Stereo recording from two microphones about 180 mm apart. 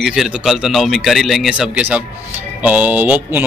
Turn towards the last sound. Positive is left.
turn(degrees=-10)  # may be behind; listen again after turning